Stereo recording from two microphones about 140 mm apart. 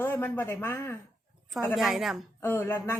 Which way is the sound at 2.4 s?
15° left (ahead or behind).